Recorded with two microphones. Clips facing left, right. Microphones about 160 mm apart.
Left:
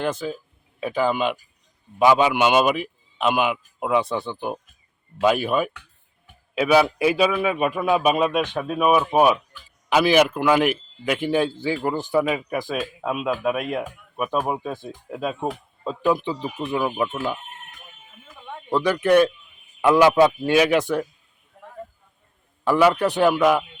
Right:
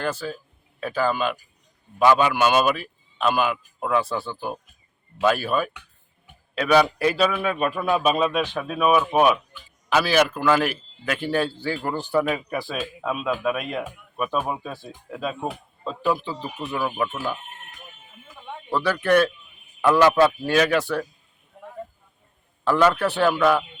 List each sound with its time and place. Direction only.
0.0 s a man's voice: 20° left (ahead or behind)
6.6 s a man's voice: 10° left (ahead or behind)
8.5 s a man's voice: 5° left (ahead or behind)
9.9 s a man's voice: 15° left (ahead or behind)
15.1 s a man's voice: 5° left (ahead or behind)
16.2 s speech: 20° left (ahead or behind)
18.7 s a man's voice: 20° left (ahead or behind)
22.6 s a man's voice: 15° left (ahead or behind)